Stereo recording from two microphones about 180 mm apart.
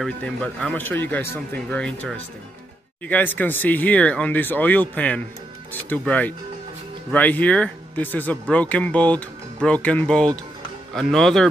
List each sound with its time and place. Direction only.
0.0 s speech: 5° left (ahead or behind)